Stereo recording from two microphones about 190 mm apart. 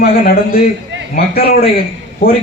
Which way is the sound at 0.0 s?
55° left (ahead or behind).